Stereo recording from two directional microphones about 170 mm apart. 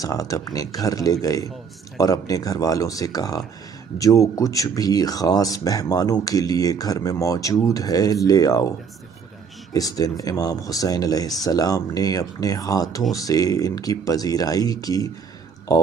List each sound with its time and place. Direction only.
0.0 s speech: 20° left (ahead or behind)
9.8 s speech: 20° left (ahead or behind)